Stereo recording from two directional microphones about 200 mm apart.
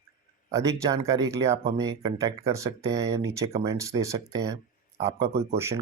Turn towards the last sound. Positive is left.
turn(degrees=-15)  # may be behind; listen again after turning